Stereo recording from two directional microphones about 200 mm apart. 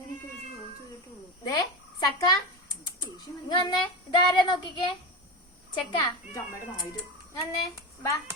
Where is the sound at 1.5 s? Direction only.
20° left (ahead or behind).